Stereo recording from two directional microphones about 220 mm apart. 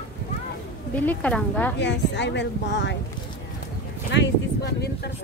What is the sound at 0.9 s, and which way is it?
Speech, 5° left (ahead or behind).